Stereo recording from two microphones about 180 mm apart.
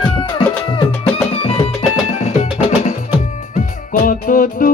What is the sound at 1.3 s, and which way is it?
Music, 30° left (ahead or behind).